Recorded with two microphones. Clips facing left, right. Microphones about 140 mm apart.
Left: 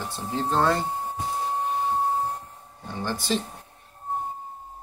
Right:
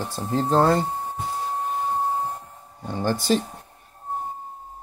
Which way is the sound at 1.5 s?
Centre (ahead or behind).